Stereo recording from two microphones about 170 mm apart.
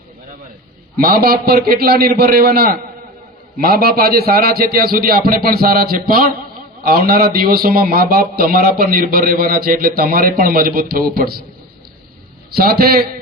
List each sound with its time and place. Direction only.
0.9 s a man's voice: 60° right (ahead or behind)
12.5 s a man's voice: 65° right (ahead or behind)